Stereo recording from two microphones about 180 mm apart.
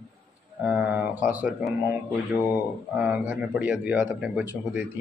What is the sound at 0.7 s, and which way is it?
Speech, 10° right (ahead or behind).